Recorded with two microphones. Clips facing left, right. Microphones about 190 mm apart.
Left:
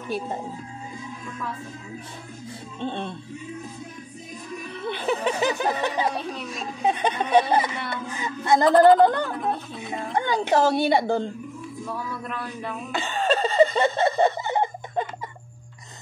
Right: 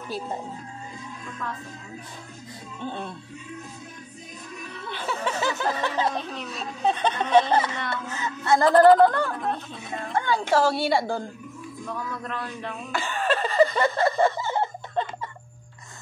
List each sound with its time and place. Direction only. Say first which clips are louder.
2.8 s a woman's voice: left 3 dB; 25° left (ahead or behind)
4.9 s speech: left 3 dB; 20° left (ahead or behind)
8.6 s speech: even; centre (ahead or behind)
9.0 s a woman's voice: even; 20° left (ahead or behind)
11.8 s speech: even; 5° left (ahead or behind)
12.9 s chuckle: left 2 dB; 20° left (ahead or behind)
14.5 s laughter: left 2 dB; 15° left (ahead or behind)